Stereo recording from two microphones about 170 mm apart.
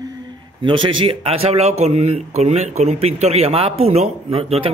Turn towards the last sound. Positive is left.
turn(degrees=-35)  # may be behind; listen again after turning